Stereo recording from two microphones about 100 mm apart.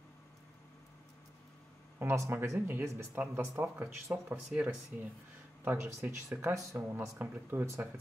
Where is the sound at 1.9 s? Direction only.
25° right (ahead or behind).